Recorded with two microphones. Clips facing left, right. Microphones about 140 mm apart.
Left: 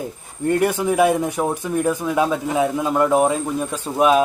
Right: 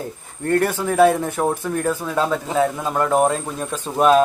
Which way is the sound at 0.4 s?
15° left (ahead or behind).